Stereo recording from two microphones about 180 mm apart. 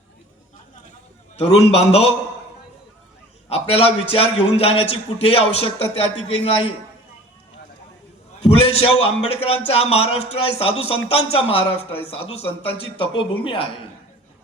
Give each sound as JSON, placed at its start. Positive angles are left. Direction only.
{"t": 1.4, "sound": "a man's voice", "side_deg": 35}
{"t": 3.5, "sound": "a man's voice", "side_deg": 35}
{"t": 8.4, "sound": "a man's voice", "side_deg": 35}